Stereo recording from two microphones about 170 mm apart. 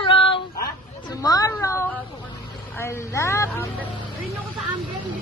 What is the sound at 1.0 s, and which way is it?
Speech, 20° left (ahead or behind).